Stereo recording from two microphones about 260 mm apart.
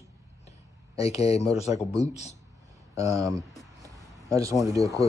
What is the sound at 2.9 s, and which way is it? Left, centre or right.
Speech, centre.